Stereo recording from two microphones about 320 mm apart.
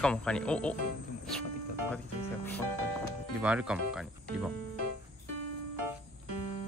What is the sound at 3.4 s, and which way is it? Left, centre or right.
Speech, centre.